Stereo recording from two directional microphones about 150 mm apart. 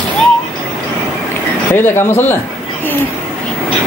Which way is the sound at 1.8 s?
15° left (ahead or behind).